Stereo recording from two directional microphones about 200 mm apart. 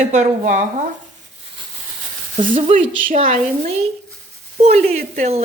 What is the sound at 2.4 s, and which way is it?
Speech, 30° right (ahead or behind).